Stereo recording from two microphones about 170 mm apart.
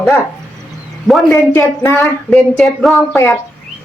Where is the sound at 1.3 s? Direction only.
15° left (ahead or behind).